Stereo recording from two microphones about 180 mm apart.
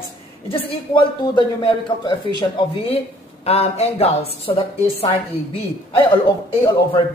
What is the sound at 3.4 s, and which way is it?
A woman's voice, 35° left (ahead or behind).